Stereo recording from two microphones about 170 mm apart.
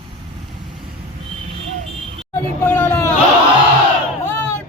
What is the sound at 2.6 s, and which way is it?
Hubbub, 10° left (ahead or behind).